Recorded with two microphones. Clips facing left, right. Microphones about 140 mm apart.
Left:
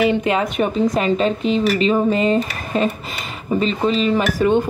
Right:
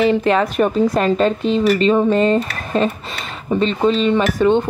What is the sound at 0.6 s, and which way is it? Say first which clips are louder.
Speech: right 2 dB; centre (ahead or behind).